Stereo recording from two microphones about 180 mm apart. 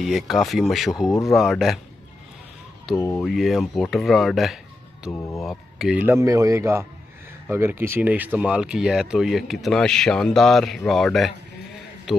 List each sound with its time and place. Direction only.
0.0 s speech: centre (ahead or behind)
3.2 s speech: centre (ahead or behind)
5.1 s speech: 15° left (ahead or behind)
5.4 s a man's voice: centre (ahead or behind)